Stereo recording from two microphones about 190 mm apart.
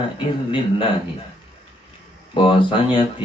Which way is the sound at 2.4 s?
25° left (ahead or behind).